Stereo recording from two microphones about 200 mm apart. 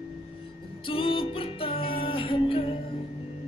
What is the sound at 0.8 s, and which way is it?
Music, 25° left (ahead or behind).